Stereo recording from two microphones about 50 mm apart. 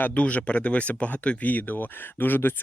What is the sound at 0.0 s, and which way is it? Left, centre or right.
Speech, left.